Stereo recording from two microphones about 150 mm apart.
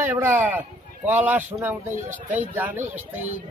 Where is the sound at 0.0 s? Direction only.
15° right (ahead or behind).